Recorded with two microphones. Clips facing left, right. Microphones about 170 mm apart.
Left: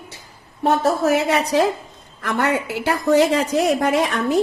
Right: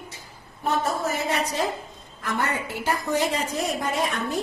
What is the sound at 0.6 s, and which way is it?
A woman's voice, 75° left (ahead or behind).